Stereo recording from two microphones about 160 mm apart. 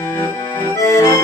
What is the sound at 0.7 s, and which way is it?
Accordion, 20° left (ahead or behind).